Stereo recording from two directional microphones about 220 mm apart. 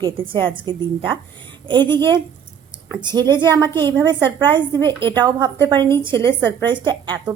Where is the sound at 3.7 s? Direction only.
10° left (ahead or behind).